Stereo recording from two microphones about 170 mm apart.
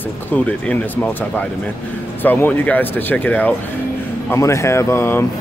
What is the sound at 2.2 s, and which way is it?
Speech, 10° left (ahead or behind).